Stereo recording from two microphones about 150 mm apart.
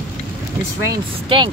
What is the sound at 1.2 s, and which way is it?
Speech, 35° right (ahead or behind).